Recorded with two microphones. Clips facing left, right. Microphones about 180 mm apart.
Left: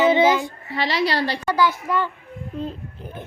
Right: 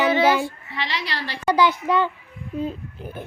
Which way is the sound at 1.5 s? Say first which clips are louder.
Right 4 dB; 20° right (ahead or behind).